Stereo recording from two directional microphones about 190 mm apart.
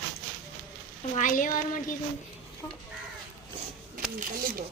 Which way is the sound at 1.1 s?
45° left (ahead or behind).